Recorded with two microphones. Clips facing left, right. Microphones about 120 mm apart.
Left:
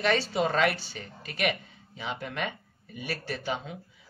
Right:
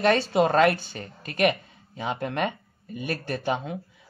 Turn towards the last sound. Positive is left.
turn(degrees=-50)  # may be behind; listen again after turning